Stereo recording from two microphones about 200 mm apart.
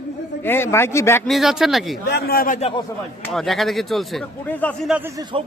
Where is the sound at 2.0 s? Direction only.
55° left (ahead or behind).